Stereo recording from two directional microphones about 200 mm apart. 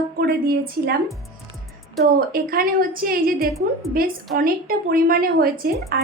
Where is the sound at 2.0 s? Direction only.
50° right (ahead or behind).